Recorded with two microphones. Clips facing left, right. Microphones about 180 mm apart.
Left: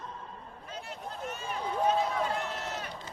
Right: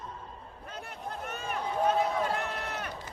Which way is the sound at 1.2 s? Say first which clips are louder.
Even; 60° right (ahead or behind).